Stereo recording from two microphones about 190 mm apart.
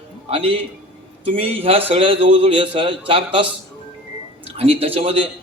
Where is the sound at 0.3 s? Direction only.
30° right (ahead or behind).